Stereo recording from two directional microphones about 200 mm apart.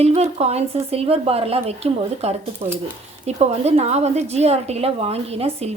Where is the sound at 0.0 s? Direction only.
30° right (ahead or behind).